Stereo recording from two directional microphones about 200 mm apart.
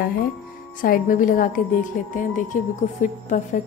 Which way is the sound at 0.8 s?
45° left (ahead or behind).